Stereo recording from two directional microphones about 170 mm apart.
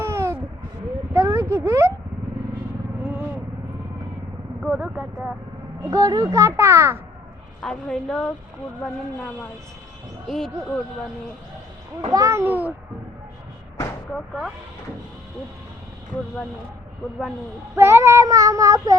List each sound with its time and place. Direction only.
0.0 s a sound: 15° right (ahead or behind)
4.6 s vehicle: 10° right (ahead or behind)
5.9 s a child's voice: 20° right (ahead or behind)
7.6 s a woman's voice: 5° left (ahead or behind)
10.2 s a woman's voice: 5° left (ahead or behind)
12.1 s a child's voice: 20° right (ahead or behind)
14.1 s a woman's voice: centre (ahead or behind)
17.7 s child singing: 15° right (ahead or behind)